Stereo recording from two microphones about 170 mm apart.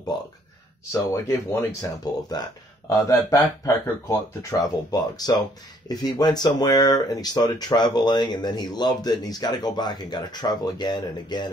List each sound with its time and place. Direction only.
1.1 s speech: 15° left (ahead or behind)